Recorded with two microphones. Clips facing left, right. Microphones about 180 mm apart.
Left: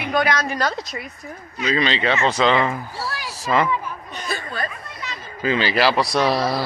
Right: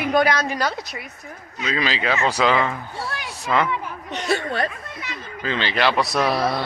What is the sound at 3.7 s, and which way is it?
Speech, 75° right (ahead or behind).